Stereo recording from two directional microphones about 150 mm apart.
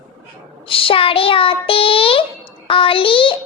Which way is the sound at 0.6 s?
35° left (ahead or behind).